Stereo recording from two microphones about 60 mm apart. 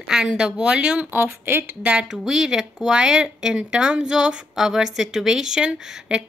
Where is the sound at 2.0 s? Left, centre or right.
Centre.